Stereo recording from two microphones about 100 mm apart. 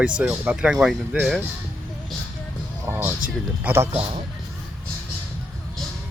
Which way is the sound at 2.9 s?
25° right (ahead or behind).